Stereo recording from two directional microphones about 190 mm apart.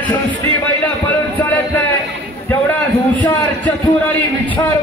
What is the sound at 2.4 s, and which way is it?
A man's voice, 10° left (ahead or behind).